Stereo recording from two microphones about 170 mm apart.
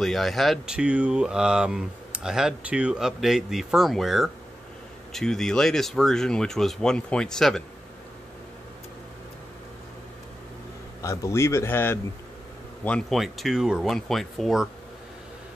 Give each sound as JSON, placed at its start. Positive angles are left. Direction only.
{"t": 0.0, "sound": "speech", "side_deg": 0}
{"t": 11.0, "sound": "a man's voice", "side_deg": 15}